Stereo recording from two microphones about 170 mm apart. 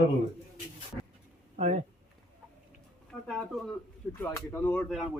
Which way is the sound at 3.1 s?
5° left (ahead or behind).